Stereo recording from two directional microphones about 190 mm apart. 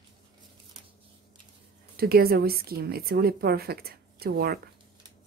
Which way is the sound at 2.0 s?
50° right (ahead or behind).